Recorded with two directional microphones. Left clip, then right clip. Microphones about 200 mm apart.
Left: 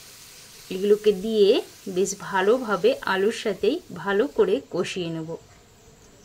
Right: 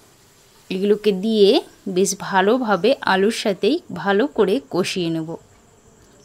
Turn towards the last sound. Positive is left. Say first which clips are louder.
# right 6 dB
turn(degrees=-50)  # may be behind; listen again after turning